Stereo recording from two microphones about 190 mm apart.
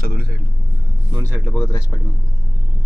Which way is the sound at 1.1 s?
15° right (ahead or behind).